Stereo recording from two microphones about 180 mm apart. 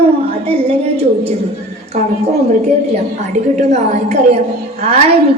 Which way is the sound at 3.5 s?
40° right (ahead or behind).